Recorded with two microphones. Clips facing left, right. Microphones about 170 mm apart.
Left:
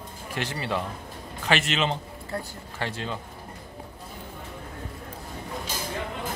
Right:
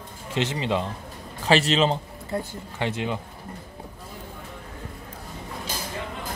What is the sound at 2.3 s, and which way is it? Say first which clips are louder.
Speech: right 4 dB; 20° right (ahead or behind).